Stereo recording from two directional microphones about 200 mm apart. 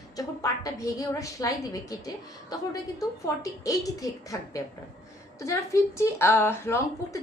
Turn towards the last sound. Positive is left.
turn(degrees=10)  # may be behind; listen again after turning